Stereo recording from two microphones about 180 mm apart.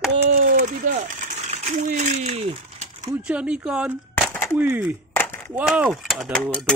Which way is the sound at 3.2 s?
5° right (ahead or behind).